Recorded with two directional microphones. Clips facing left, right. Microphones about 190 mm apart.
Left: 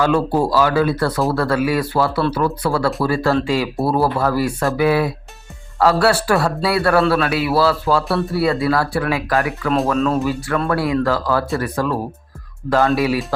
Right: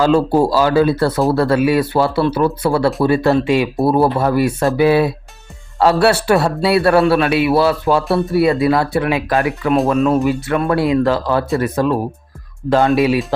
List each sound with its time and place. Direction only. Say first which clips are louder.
0.0 s a man's voice: right 4 dB; 25° right (ahead or behind)